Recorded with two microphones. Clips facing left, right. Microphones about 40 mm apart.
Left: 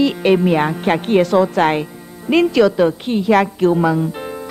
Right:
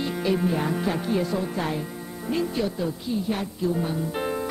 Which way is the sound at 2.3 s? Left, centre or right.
Left.